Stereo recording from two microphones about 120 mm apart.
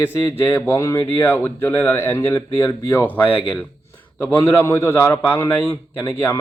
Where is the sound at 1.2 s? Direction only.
15° left (ahead or behind).